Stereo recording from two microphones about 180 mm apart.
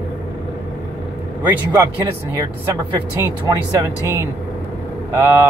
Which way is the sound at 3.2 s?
20° right (ahead or behind).